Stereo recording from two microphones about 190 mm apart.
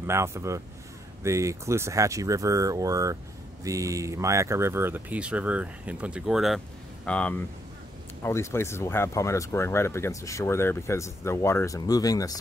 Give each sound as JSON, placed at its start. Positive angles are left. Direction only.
{"t": 0.0, "sound": "speech", "side_deg": -15}